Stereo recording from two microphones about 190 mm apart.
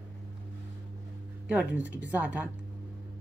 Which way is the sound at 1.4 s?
5° right (ahead or behind).